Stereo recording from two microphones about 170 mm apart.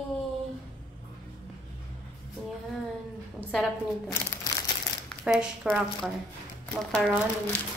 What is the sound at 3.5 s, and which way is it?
Speech, 5° left (ahead or behind).